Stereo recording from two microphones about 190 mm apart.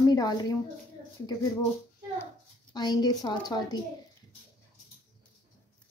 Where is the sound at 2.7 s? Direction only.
20° left (ahead or behind).